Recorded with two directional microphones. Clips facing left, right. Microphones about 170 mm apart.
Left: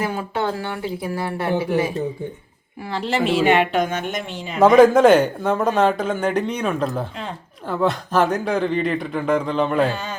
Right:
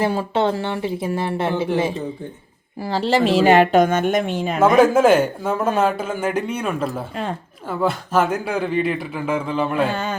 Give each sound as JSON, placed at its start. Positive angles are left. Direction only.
{"t": 0.0, "sound": "speech", "side_deg": -30}
{"t": 4.6, "sound": "a man's voice", "side_deg": -5}